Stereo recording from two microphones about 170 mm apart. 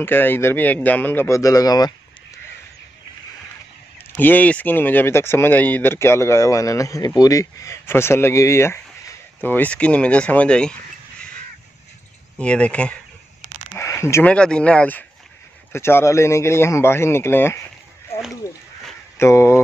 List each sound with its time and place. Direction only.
0.0 s speech: 10° left (ahead or behind)
4.2 s speech: 10° left (ahead or behind)
12.4 s speech: 5° left (ahead or behind)
19.1 s speech: 15° left (ahead or behind)